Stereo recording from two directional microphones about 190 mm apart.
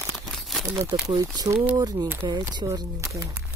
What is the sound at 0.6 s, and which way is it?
Speech, 20° right (ahead or behind).